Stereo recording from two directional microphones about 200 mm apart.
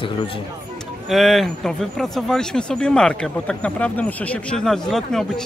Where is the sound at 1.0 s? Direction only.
Centre (ahead or behind).